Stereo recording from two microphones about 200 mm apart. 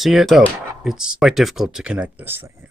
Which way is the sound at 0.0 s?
Centre (ahead or behind).